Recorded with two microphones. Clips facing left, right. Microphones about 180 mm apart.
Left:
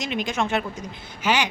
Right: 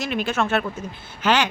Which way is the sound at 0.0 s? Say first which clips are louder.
Right 2 dB; 15° left (ahead or behind).